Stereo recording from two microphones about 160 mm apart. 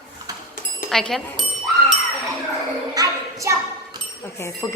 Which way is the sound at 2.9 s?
20° right (ahead or behind).